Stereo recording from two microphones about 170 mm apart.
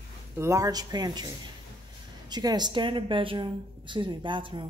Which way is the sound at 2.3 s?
25° right (ahead or behind).